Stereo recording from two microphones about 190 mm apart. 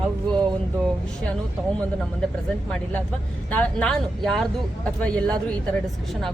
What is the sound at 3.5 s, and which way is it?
Speech, 5° left (ahead or behind).